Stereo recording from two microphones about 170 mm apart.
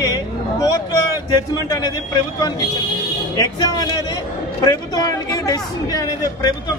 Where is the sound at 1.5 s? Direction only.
20° left (ahead or behind).